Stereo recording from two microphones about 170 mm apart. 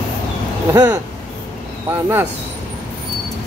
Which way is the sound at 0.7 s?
15° right (ahead or behind).